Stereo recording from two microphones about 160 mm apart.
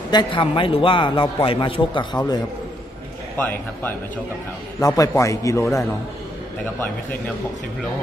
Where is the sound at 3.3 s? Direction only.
10° left (ahead or behind).